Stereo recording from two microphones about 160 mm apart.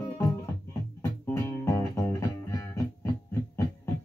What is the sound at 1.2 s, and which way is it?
Music, 15° left (ahead or behind).